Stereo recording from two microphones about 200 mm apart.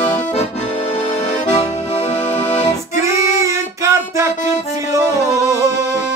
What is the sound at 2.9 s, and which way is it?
Female singing, 15° right (ahead or behind).